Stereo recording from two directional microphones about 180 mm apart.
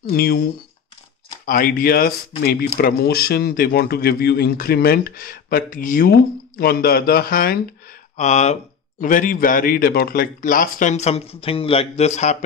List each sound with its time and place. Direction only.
0.1 s speech: 55° left (ahead or behind)
1.4 s speech: 50° left (ahead or behind)
8.2 s speech: 40° left (ahead or behind)